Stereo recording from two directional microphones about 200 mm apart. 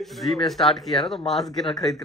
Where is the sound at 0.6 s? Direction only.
25° left (ahead or behind).